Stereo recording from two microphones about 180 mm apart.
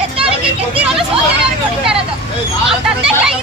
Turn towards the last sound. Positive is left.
turn(degrees=-5)  # may be behind; listen again after turning